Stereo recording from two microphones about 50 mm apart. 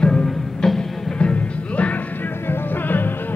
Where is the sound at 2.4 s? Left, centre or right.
Left.